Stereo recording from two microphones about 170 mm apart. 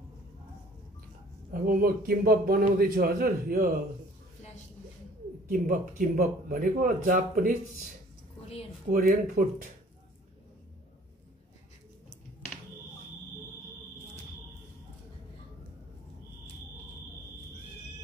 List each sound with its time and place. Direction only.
1.5 s a man's voice: 55° right (ahead or behind)
5.5 s a man's voice: 55° right (ahead or behind)
8.9 s a man's voice: 60° right (ahead or behind)